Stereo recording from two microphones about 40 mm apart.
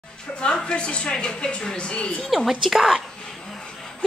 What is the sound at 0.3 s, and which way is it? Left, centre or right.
A woman's voice, left.